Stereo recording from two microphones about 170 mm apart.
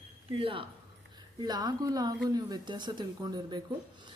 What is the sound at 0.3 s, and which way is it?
Speech, 30° right (ahead or behind).